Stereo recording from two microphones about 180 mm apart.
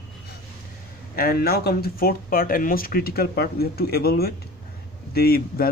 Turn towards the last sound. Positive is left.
turn(degrees=60)  # may be behind; listen again after turning